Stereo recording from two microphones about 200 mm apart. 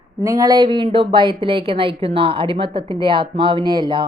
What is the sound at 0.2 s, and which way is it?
Speech, 20° right (ahead or behind).